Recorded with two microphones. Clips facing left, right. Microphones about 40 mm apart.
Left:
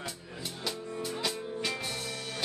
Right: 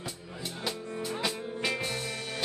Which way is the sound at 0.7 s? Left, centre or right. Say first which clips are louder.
Right 1 dB; centre.